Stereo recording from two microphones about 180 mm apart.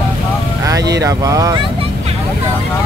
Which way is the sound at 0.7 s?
20° right (ahead or behind).